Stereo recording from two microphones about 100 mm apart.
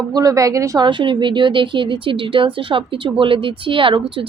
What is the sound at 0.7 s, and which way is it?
Speech, 50° right (ahead or behind).